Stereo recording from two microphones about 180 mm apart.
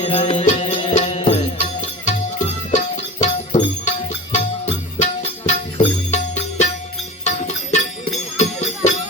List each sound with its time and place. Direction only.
0.0 s music: 35° left (ahead or behind)
2.7 s music: 40° left (ahead or behind)